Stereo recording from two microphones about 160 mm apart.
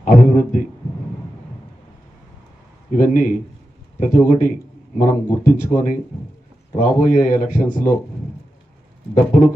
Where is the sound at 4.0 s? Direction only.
55° left (ahead or behind).